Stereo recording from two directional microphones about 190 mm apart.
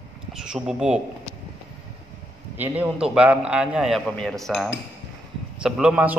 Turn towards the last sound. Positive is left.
turn(degrees=-5)  # may be behind; listen again after turning